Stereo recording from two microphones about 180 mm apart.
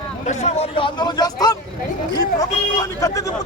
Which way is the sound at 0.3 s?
35° left (ahead or behind).